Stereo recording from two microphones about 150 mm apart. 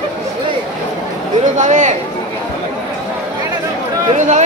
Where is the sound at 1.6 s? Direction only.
55° right (ahead or behind).